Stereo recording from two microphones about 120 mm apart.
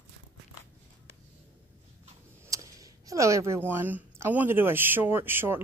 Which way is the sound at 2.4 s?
30° right (ahead or behind).